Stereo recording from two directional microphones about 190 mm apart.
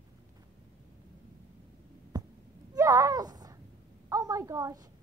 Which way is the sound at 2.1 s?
20° right (ahead or behind).